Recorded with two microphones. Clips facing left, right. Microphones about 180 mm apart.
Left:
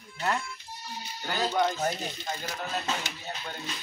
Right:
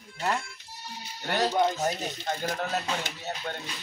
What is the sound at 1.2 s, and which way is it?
Speech, 75° right (ahead or behind).